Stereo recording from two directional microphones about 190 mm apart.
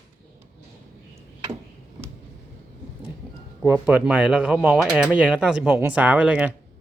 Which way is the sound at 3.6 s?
5° right (ahead or behind).